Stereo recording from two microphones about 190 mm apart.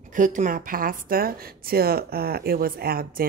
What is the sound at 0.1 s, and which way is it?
A woman's voice, 40° right (ahead or behind).